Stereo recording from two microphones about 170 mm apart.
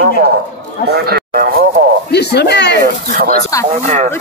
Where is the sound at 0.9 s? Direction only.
70° right (ahead or behind).